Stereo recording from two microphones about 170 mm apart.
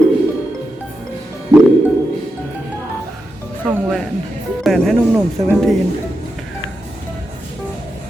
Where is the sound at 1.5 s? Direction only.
20° right (ahead or behind).